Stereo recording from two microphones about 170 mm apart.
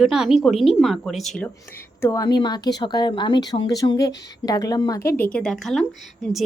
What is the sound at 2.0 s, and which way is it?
Speech, 20° left (ahead or behind).